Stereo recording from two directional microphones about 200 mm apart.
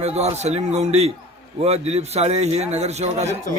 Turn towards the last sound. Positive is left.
turn(degrees=-35)  # may be behind; listen again after turning